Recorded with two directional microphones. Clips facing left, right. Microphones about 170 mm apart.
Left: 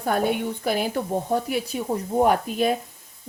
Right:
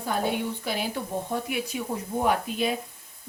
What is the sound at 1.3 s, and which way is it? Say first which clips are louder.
Speech: left 5 dB; 40° left (ahead or behind).